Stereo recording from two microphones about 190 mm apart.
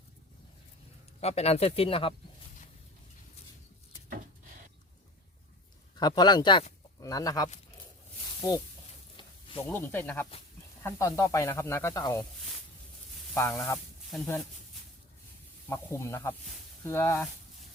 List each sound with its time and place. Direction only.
1.2 s speech: 35° left (ahead or behind)
6.0 s speech: 20° left (ahead or behind)
9.1 s a sound: 25° left (ahead or behind)
9.6 s speech: 10° left (ahead or behind)
13.3 s speech: 10° left (ahead or behind)
15.7 s speech: 15° left (ahead or behind)